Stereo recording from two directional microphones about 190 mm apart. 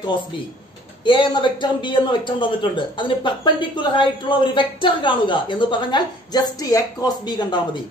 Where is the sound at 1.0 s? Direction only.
25° left (ahead or behind).